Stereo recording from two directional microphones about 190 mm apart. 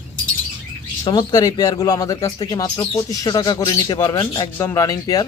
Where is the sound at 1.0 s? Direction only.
20° left (ahead or behind).